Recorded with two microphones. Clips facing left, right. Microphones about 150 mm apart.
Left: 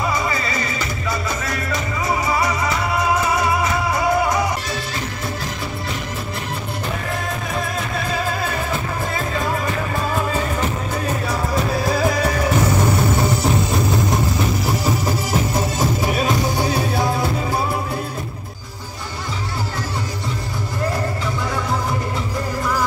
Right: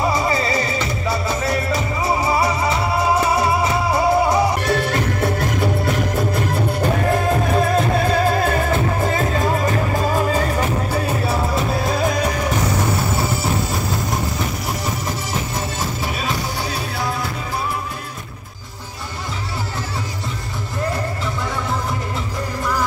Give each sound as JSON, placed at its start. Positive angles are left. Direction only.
{"t": 0.0, "sound": "music", "side_deg": -30}
{"t": 4.6, "sound": "music", "side_deg": -60}
{"t": 9.0, "sound": "music", "side_deg": -45}
{"t": 10.9, "sound": "music", "side_deg": -30}
{"t": 15.0, "sound": "music", "side_deg": 10}